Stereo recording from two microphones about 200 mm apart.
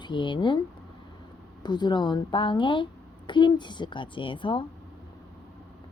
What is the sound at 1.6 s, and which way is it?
Speech, 20° left (ahead or behind).